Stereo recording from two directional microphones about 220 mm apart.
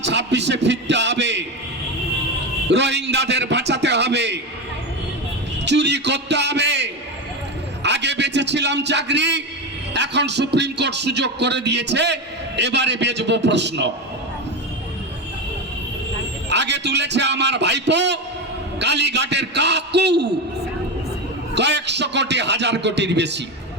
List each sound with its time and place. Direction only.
0.0 s a man's voice: 50° right (ahead or behind)
2.6 s a man's voice: 50° right (ahead or behind)
5.6 s a man's voice: 50° right (ahead or behind)
16.5 s a man's voice: 50° right (ahead or behind)
21.5 s a man's voice: 50° right (ahead or behind)